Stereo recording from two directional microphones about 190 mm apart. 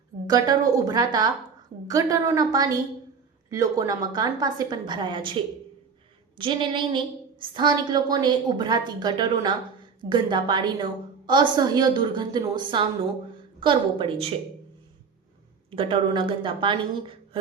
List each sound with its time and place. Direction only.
0.3 s a woman's voice: 20° right (ahead or behind)
15.7 s a woman's voice: 25° right (ahead or behind)